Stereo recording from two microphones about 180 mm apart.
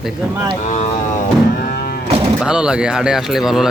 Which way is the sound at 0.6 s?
40° left (ahead or behind).